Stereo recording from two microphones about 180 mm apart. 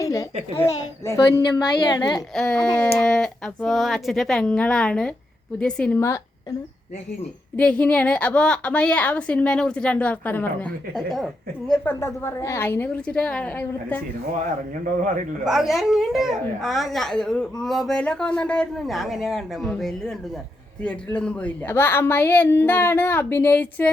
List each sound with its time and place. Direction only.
0.0 s a sound: 20° left (ahead or behind)
0.7 s a child's voice: 20° left (ahead or behind)
2.3 s a woman's voice: 5° left (ahead or behind)
7.5 s a woman's voice: 5° left (ahead or behind)
15.4 s a woman's voice: centre (ahead or behind)